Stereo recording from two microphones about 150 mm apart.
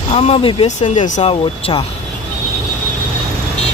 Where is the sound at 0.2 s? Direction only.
40° left (ahead or behind).